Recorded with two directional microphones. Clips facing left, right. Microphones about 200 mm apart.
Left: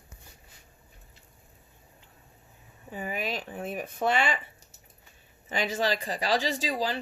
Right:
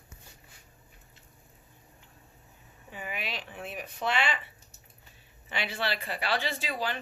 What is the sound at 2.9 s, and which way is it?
Speech, 40° left (ahead or behind).